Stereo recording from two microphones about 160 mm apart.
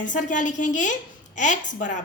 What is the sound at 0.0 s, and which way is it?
A woman's voice, 55° left (ahead or behind).